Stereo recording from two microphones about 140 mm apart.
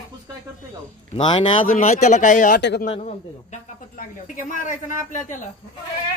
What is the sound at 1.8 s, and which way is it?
Speech, 55° left (ahead or behind).